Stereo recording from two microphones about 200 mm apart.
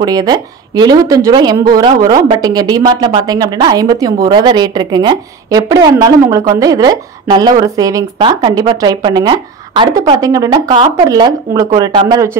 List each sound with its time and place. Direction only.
0.0 s a woman's voice: 20° right (ahead or behind)